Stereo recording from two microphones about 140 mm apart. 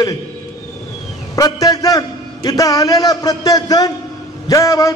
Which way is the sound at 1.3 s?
25° left (ahead or behind).